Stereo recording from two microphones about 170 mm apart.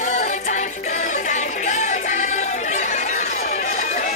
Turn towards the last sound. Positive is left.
turn(degrees=40)  # may be behind; listen again after turning